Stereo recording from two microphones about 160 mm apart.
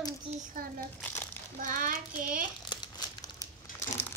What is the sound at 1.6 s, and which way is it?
Child singing, 55° right (ahead or behind).